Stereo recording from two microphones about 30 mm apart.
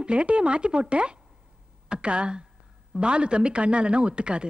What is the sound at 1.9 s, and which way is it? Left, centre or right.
Speech, right.